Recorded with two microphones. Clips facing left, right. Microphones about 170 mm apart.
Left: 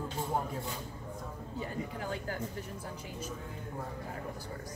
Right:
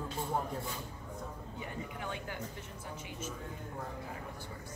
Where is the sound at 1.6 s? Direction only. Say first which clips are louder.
Left 5 dB; 35° left (ahead or behind).